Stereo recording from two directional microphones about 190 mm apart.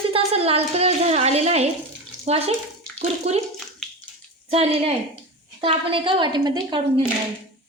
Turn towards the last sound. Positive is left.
turn(degrees=-25)  # may be behind; listen again after turning